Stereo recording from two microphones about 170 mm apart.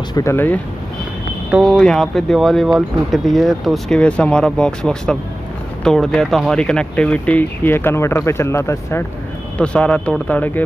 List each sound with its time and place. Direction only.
0.1 s speech: 15° left (ahead or behind)
1.5 s speech: centre (ahead or behind)